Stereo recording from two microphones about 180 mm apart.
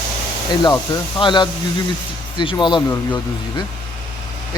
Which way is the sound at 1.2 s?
25° left (ahead or behind).